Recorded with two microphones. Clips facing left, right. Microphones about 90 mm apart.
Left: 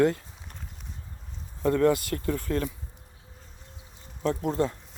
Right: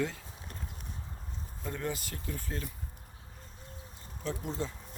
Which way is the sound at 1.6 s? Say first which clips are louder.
Left 15 dB; 90° left.